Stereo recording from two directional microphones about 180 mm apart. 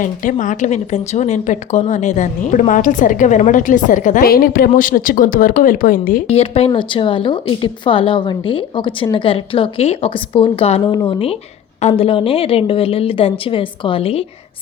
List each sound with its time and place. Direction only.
0.0 s speech: 45° left (ahead or behind)
6.2 s a woman's voice: 35° left (ahead or behind)